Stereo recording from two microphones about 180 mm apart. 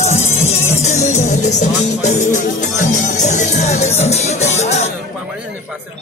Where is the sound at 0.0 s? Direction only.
40° left (ahead or behind).